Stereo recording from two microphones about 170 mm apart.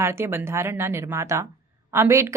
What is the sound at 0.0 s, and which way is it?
A woman's voice, 15° right (ahead or behind).